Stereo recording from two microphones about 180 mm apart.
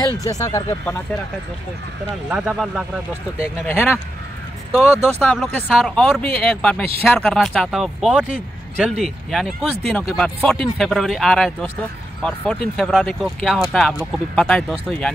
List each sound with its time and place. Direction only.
0.2 s speech: 20° left (ahead or behind)
2.2 s speech: 5° right (ahead or behind)
5.0 s speech: 5° left (ahead or behind)